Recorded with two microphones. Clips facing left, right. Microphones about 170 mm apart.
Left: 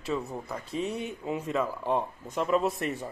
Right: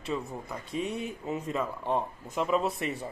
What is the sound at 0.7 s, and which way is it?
Speech, 35° left (ahead or behind).